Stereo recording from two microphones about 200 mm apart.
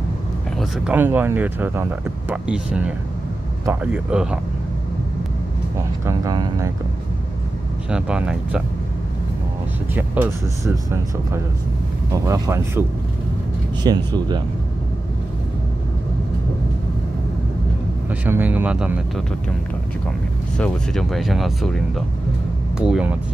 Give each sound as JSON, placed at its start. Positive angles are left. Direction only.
{"t": 0.6, "sound": "speech", "side_deg": -5}
{"t": 5.8, "sound": "speech", "side_deg": -15}
{"t": 7.9, "sound": "speech", "side_deg": -5}
{"t": 10.6, "sound": "speech", "side_deg": -15}
{"t": 13.8, "sound": "speech", "side_deg": -20}
{"t": 18.2, "sound": "speech", "side_deg": -10}
{"t": 20.5, "sound": "speech", "side_deg": 5}